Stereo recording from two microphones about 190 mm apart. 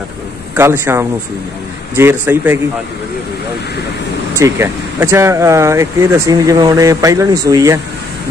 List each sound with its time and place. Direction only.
0.6 s speech: 15° right (ahead or behind)
4.4 s speech: 15° right (ahead or behind)